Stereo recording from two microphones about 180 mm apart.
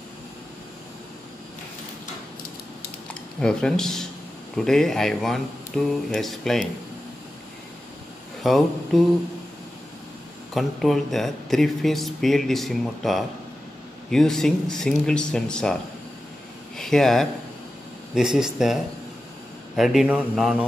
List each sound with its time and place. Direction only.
3.3 s speech: 5° left (ahead or behind)
8.4 s speech: centre (ahead or behind)
10.5 s speech: centre (ahead or behind)